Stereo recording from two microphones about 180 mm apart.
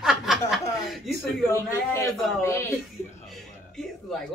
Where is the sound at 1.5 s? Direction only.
15° left (ahead or behind).